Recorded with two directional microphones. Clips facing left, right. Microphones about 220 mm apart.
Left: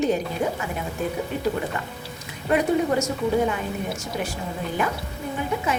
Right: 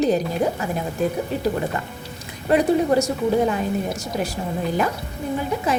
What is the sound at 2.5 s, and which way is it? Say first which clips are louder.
A woman's voice: right 3 dB; 35° right (ahead or behind).